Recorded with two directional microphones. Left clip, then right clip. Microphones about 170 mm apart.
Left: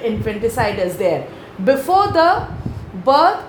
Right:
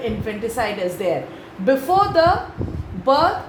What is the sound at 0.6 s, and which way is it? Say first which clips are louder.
A woman's voice: left 3 dB; 40° left (ahead or behind).